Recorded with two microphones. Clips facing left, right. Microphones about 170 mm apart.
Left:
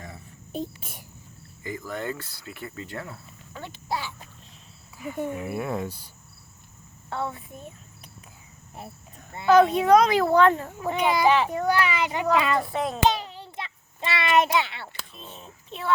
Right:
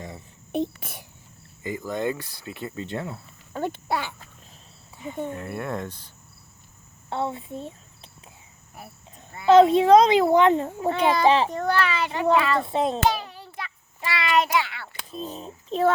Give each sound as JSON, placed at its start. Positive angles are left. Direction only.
{"t": 0.5, "sound": "speech", "side_deg": -70}
{"t": 1.6, "sound": "speech", "side_deg": -20}
{"t": 3.5, "sound": "a child's voice", "side_deg": -50}
{"t": 4.9, "sound": "speech", "side_deg": -25}
{"t": 5.2, "sound": "speech", "side_deg": 10}
{"t": 7.1, "sound": "a child's voice", "side_deg": -25}
{"t": 8.8, "sound": "speech", "side_deg": 25}
{"t": 9.5, "sound": "speech", "side_deg": -25}
{"t": 10.9, "sound": "speech", "side_deg": 15}
{"t": 11.3, "sound": "a child's voice", "side_deg": -30}
{"t": 11.5, "sound": "speech", "side_deg": 10}
{"t": 12.6, "sound": "speech", "side_deg": -25}
{"t": 13.0, "sound": "a sound", "side_deg": 20}
{"t": 15.1, "sound": "a child's voice", "side_deg": -35}